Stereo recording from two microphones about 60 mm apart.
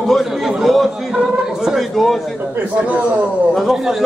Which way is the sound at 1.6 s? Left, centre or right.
Centre.